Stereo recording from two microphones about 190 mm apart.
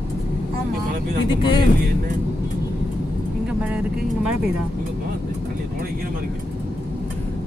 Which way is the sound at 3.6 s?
5° right (ahead or behind).